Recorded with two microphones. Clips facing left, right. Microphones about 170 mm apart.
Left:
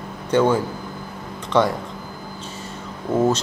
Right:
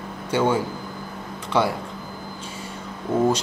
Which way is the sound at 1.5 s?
10° right (ahead or behind).